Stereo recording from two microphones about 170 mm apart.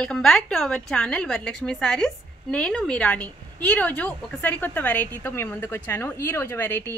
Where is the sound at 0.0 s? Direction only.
5° left (ahead or behind).